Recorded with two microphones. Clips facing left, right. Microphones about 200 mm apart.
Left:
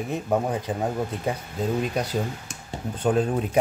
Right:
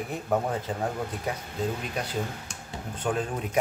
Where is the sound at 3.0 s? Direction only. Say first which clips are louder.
Left 7 dB; 35° left (ahead or behind).